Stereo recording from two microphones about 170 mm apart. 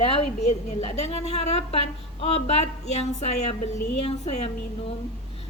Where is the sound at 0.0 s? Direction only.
35° left (ahead or behind).